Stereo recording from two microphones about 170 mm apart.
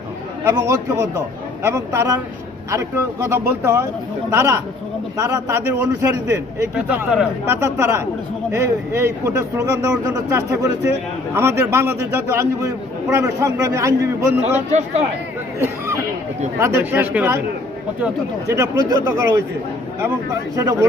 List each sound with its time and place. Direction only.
0.4 s a man's voice: 15° right (ahead or behind)
6.7 s speech: 5° right (ahead or behind)
14.4 s speech: 40° right (ahead or behind)
16.6 s speech: 15° right (ahead or behind)
18.5 s speech: 20° right (ahead or behind)
20.6 s speech: 15° right (ahead or behind)